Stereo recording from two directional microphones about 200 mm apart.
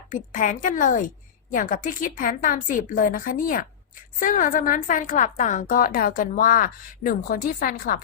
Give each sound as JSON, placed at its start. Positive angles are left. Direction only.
{"t": 0.1, "sound": "a woman's voice", "side_deg": 40}